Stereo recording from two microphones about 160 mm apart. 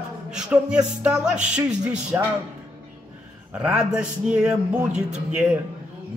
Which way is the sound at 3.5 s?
5° right (ahead or behind).